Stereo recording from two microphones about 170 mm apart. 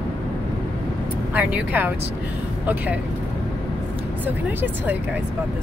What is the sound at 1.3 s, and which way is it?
Speech, 10° right (ahead or behind).